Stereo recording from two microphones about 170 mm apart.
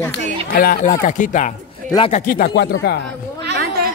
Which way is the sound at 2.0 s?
35° left (ahead or behind).